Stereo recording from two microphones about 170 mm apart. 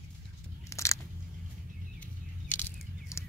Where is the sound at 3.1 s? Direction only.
15° left (ahead or behind).